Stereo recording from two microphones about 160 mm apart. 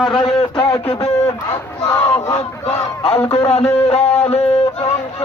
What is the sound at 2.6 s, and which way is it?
A man's voice, 40° left (ahead or behind).